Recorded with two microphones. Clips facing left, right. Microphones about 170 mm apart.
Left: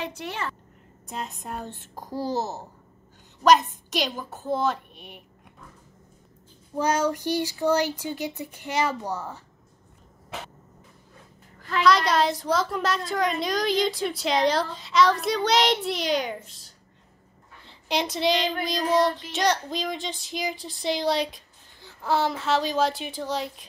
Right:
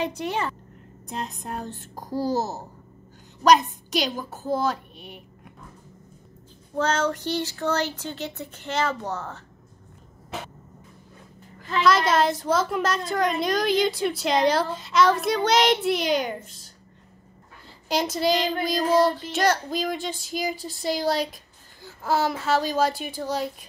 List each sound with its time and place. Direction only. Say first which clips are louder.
0.0 s a woman's voice: right 5 dB; 15° right (ahead or behind)
1.0 s speech: right 2 dB; 5° left (ahead or behind)
6.8 s speech: even; 15° left (ahead or behind)
11.8 s speech: right 1 dB; centre (ahead or behind)